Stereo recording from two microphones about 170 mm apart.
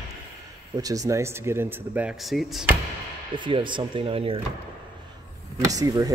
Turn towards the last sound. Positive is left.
turn(degrees=-20)  # may be behind; listen again after turning